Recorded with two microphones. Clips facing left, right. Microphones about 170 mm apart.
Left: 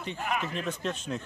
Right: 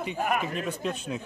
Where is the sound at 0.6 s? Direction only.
10° right (ahead or behind).